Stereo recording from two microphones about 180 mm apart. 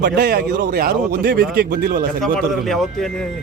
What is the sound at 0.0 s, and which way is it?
Speech, 60° right (ahead or behind).